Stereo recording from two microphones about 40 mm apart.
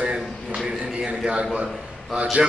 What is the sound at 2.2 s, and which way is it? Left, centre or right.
Speech, right.